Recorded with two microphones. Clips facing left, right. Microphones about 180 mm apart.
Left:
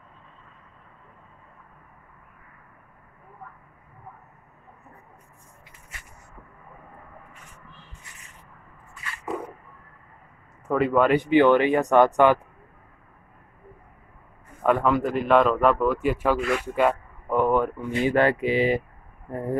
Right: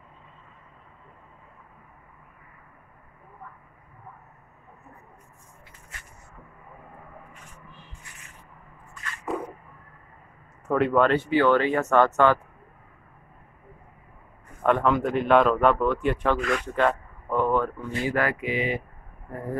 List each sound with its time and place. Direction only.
10.7 s speech: centre (ahead or behind)
11.1 s speech: 15° left (ahead or behind)
14.6 s speech: 5° left (ahead or behind); by 18.8 s 35° left (ahead or behind)